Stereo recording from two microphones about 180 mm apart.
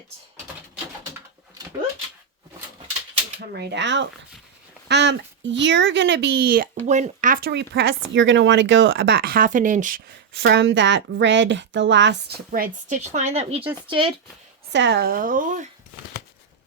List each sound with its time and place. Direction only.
3.5 s a woman's voice: 65° right (ahead or behind)
6.8 s speech: 40° right (ahead or behind)
7.7 s speech: 80° right; by 10.0 s 45° right (ahead or behind)
10.4 s a woman's voice: 80° right
12.5 s speech: 50° right (ahead or behind); by 14.1 s 30° right (ahead or behind)
14.7 s speech: 80° right; by 15.7 s 45° right (ahead or behind)